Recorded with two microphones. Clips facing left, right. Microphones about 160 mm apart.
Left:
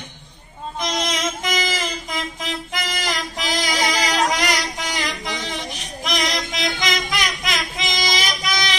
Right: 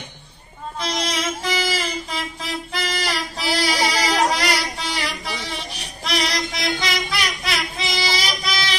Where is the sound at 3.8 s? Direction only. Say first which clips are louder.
Left 1 dB; 15° left (ahead or behind).